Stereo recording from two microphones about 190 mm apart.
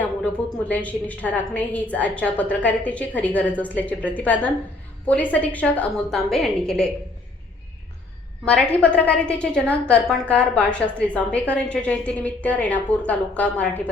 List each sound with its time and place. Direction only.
0.0 s a woman's voice: 5° left (ahead or behind)
8.4 s a woman's voice: 5° left (ahead or behind)